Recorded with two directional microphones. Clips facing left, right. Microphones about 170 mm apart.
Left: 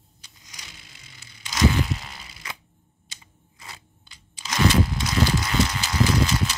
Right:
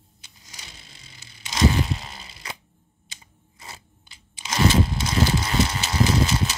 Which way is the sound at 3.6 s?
25° right (ahead or behind).